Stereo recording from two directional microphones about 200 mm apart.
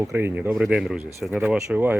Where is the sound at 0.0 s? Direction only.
10° right (ahead or behind).